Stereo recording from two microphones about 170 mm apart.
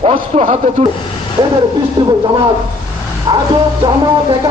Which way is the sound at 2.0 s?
25° right (ahead or behind).